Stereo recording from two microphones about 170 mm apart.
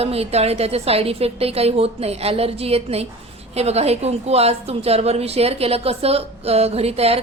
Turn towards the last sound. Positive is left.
turn(degrees=-35)  # may be behind; listen again after turning